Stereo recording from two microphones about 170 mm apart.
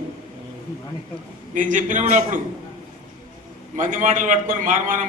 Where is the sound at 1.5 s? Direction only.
50° right (ahead or behind).